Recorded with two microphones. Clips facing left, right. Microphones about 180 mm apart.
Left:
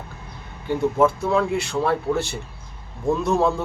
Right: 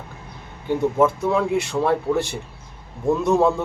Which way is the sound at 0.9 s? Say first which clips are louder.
Left 1 dB; 20° right (ahead or behind).